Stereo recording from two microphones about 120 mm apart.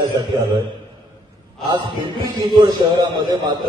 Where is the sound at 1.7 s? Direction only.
40° right (ahead or behind).